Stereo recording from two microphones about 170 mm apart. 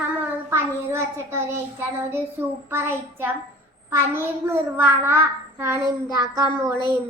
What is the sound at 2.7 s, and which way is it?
A child's voice, 15° right (ahead or behind).